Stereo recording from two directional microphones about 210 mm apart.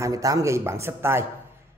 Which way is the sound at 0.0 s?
15° right (ahead or behind).